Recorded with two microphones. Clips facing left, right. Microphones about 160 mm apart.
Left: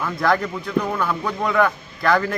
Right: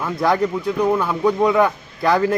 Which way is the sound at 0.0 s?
15° right (ahead or behind).